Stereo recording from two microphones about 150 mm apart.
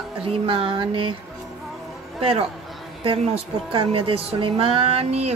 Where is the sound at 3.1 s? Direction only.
35° right (ahead or behind).